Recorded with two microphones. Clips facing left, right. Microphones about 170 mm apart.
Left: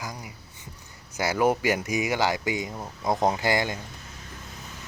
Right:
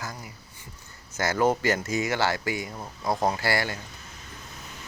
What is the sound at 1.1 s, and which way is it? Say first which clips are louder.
Speech: even; 10° left (ahead or behind).